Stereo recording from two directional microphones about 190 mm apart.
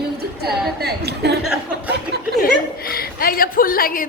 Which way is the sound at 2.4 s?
50° left (ahead or behind).